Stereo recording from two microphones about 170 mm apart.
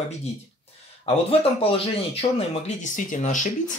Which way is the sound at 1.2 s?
35° left (ahead or behind).